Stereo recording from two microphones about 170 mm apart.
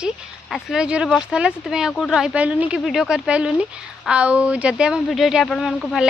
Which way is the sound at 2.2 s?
10° right (ahead or behind).